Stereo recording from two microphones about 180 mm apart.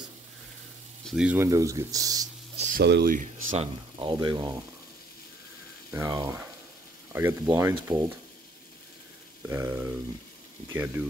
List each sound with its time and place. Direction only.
1.0 s speech: 5° right (ahead or behind)
2.5 s a sound: 40° right (ahead or behind)
2.8 s speech: 65° right (ahead or behind); by 3.6 s 45° right (ahead or behind)
4.0 s speech: 25° right (ahead or behind)
5.9 s speech: 20° right (ahead or behind)
9.5 s speech: 10° right (ahead or behind)